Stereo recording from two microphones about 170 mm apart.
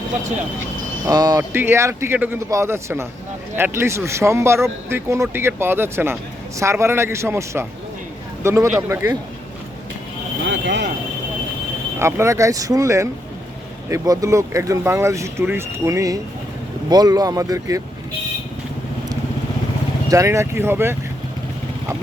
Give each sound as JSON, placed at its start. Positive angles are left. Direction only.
{"t": 1.0, "sound": "speech", "side_deg": -20}
{"t": 10.5, "sound": "a sound", "side_deg": -90}
{"t": 11.9, "sound": "speech", "side_deg": -15}
{"t": 20.1, "sound": "speech", "side_deg": -20}